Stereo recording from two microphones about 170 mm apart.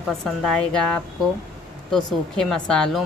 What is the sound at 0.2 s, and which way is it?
Speech, 5° left (ahead or behind).